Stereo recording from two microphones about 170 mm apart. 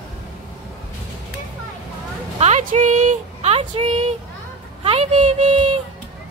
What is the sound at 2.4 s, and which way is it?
Speech, 45° right (ahead or behind).